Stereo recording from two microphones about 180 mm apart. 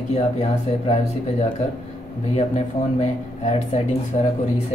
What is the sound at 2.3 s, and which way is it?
Speech, 40° left (ahead or behind).